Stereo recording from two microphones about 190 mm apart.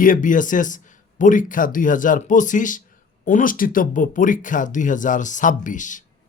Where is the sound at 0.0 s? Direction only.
45° left (ahead or behind).